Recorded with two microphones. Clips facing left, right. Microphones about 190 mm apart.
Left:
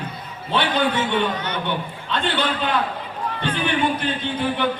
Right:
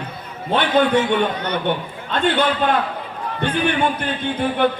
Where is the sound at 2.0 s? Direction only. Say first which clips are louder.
Right 6 dB; 50° right (ahead or behind).